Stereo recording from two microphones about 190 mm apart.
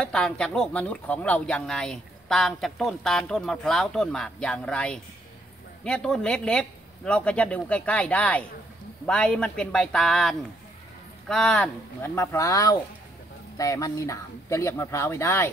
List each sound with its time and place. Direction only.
0.0 s speech: 5° left (ahead or behind)